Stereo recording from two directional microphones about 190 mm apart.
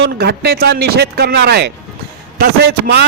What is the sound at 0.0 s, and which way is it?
A man's voice, 60° right (ahead or behind).